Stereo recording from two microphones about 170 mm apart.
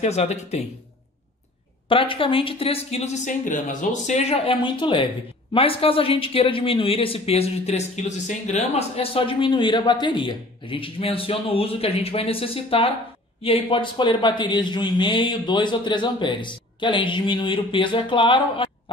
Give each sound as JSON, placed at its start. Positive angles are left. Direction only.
{"t": 0.0, "sound": "speech", "side_deg": 40}
{"t": 1.9, "sound": "speech", "side_deg": 30}